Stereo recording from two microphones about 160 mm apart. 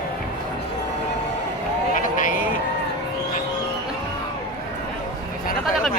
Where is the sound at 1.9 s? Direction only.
55° left (ahead or behind).